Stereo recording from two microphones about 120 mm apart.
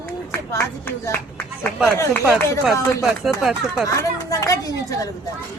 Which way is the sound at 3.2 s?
Centre (ahead or behind).